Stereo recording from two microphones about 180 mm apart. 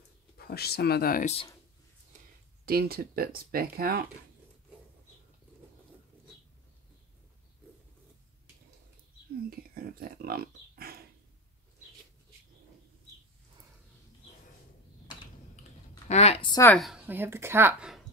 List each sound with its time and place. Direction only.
0.4 s speech: 60° left (ahead or behind)
1.2 s speech: 35° left (ahead or behind)
2.6 s speech: 55° right (ahead or behind)
9.5 s a sound: 55° right (ahead or behind)
16.1 s a sound: 35° left (ahead or behind)
16.7 s a woman's voice: centre (ahead or behind)